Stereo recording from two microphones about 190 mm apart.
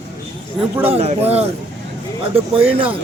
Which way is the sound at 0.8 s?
35° right (ahead or behind).